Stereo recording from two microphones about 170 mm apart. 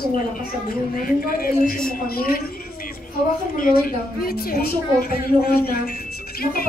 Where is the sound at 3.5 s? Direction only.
60° left (ahead or behind).